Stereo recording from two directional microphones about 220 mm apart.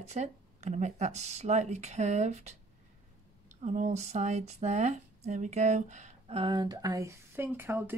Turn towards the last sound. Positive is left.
turn(degrees=-10)  # may be behind; listen again after turning